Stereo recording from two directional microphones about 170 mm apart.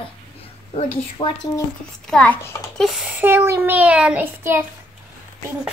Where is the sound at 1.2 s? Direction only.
30° left (ahead or behind).